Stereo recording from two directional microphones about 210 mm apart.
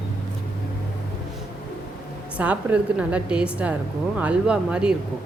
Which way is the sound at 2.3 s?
5° right (ahead or behind).